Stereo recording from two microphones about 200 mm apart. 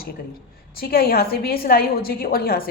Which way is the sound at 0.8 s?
50° left (ahead or behind).